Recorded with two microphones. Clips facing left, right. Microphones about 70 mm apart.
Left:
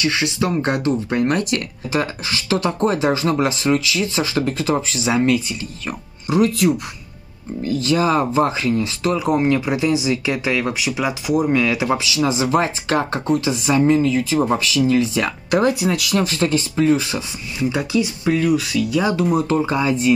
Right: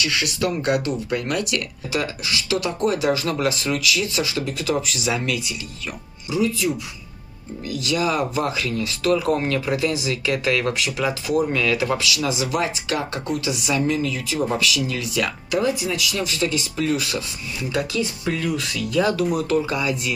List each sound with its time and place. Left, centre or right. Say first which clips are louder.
0.0 s speech: left 3 dB; left
6.3 s speech: left 5 dB; left
7.6 s speech: left 5 dB; left
15.5 s speech: left 5 dB; left; by 18.3 s centre
18.3 s speech: left 11 dB; centre
19.1 s speech: left 3 dB; left